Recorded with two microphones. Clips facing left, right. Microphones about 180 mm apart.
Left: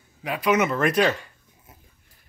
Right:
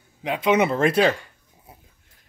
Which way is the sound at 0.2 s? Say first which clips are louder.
Right 2 dB; 25° right (ahead or behind).